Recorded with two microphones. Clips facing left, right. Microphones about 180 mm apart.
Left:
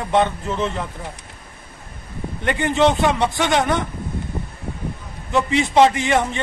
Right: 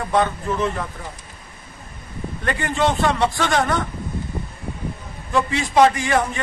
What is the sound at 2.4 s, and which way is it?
A man's voice, 20° left (ahead or behind).